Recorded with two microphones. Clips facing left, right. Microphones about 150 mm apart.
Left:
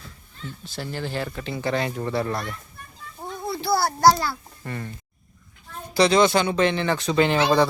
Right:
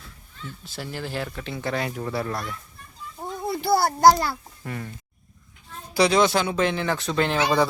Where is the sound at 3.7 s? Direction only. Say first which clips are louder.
Right 1 dB; 20° right (ahead or behind).